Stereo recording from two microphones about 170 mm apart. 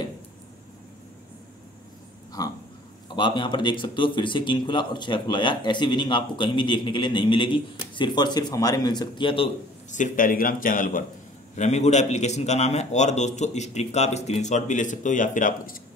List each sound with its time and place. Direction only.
2.4 s a man's voice: 20° left (ahead or behind)
9.8 s a man's voice: 45° left (ahead or behind)